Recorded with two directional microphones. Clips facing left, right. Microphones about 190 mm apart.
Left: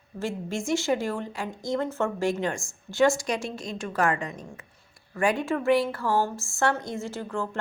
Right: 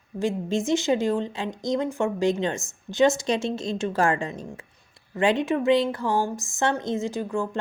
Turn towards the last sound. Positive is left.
turn(degrees=-15)  # may be behind; listen again after turning